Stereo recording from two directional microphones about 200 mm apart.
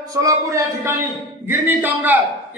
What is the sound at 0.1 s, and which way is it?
A man's voice, 15° right (ahead or behind).